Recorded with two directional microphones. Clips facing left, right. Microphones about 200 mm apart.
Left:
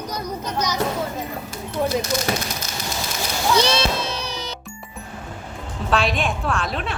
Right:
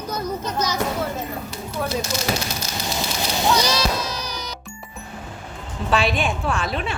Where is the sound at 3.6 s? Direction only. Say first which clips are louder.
Left 2 dB; 25° left (ahead or behind).